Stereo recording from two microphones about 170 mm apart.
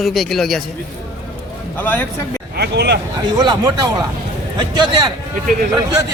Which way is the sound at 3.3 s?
25° right (ahead or behind).